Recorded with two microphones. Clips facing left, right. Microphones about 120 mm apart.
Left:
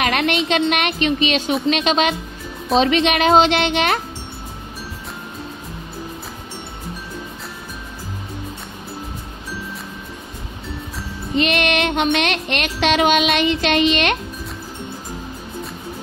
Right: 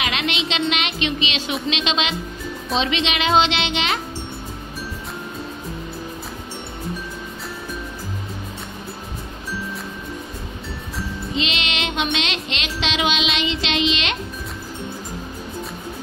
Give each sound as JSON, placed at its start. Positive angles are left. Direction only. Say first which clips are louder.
{"t": 0.0, "sound": "music", "louder": "left 6 dB", "side_deg": 50}
{"t": 11.3, "sound": "music", "louder": "left 9 dB", "side_deg": 55}